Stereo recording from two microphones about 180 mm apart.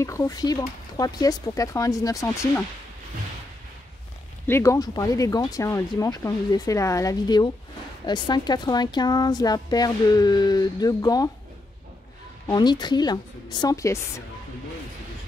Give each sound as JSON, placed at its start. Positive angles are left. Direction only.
{"t": 0.0, "sound": "speech", "side_deg": 15}
{"t": 4.5, "sound": "speech", "side_deg": 15}
{"t": 12.4, "sound": "speech", "side_deg": 25}